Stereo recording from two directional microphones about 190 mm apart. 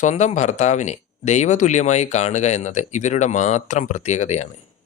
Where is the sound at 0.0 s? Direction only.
40° left (ahead or behind).